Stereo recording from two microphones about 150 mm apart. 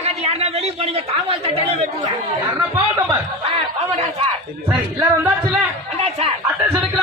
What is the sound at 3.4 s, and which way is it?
Speech, 45° right (ahead or behind).